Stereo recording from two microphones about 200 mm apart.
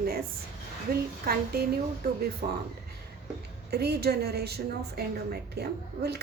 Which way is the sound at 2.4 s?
45° right (ahead or behind).